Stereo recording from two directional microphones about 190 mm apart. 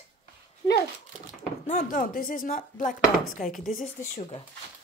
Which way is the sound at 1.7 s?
45° left (ahead or behind).